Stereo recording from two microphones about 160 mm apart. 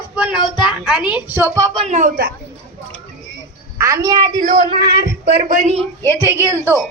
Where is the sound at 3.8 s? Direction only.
20° right (ahead or behind).